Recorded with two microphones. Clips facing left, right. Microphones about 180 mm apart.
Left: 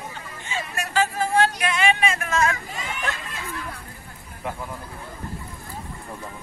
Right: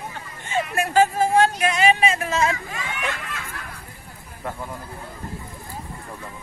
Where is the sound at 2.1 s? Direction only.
25° right (ahead or behind).